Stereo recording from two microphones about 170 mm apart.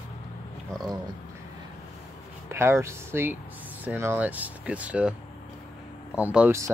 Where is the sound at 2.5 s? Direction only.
15° right (ahead or behind).